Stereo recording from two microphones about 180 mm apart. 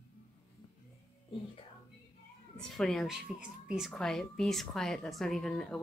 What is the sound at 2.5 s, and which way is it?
Speech, 5° left (ahead or behind).